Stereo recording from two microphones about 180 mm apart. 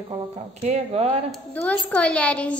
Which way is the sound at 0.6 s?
40° right (ahead or behind).